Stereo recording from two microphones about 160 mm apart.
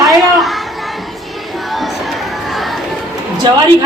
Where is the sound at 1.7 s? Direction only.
Centre (ahead or behind).